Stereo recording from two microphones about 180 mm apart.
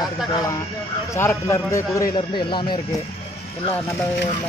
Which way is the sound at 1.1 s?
15° left (ahead or behind).